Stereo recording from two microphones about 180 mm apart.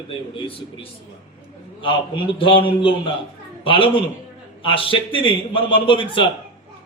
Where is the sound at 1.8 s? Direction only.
30° left (ahead or behind).